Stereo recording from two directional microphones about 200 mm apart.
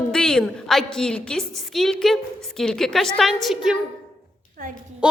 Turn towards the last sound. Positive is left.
turn(degrees=-5)  # may be behind; listen again after turning